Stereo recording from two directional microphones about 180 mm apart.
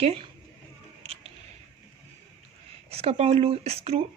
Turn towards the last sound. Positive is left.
turn(degrees=-35)  # may be behind; listen again after turning